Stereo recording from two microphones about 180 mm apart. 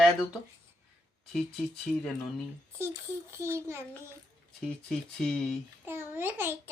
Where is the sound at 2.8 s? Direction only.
15° right (ahead or behind).